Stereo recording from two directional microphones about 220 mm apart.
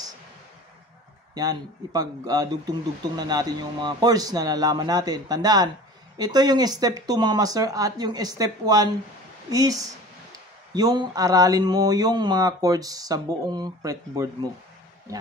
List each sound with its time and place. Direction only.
1.3 s speech: 15° right (ahead or behind)